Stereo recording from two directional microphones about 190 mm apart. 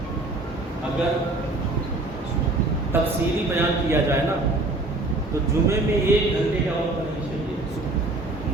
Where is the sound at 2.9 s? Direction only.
10° right (ahead or behind).